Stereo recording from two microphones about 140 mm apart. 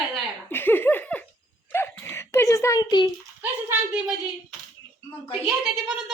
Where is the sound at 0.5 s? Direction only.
15° left (ahead or behind).